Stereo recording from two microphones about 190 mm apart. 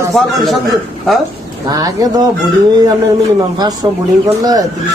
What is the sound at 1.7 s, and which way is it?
Speech, 20° right (ahead or behind).